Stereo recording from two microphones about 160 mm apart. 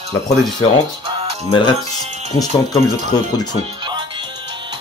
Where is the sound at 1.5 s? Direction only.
30° left (ahead or behind).